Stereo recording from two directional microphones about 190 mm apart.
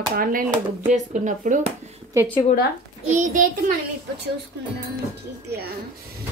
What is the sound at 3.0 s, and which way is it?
Speech, 40° right (ahead or behind).